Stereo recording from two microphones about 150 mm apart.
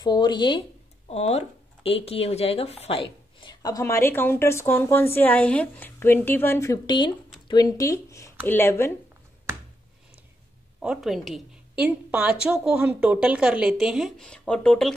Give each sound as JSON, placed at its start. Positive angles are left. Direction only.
{"t": 0.0, "sound": "speech", "side_deg": 30}
{"t": 10.8, "sound": "a woman's voice", "side_deg": -5}